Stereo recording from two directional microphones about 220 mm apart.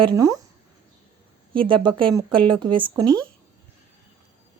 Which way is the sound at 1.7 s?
20° right (ahead or behind).